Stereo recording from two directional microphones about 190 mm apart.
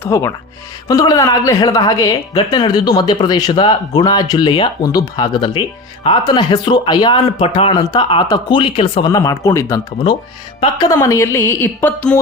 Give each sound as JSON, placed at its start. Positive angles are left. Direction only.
{"t": 0.0, "sound": "a woman's voice", "side_deg": 15}